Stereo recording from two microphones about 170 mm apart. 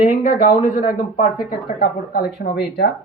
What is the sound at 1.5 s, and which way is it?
Speech, 60° left (ahead or behind).